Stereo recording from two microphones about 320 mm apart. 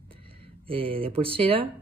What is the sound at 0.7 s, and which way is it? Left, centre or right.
Speech, centre.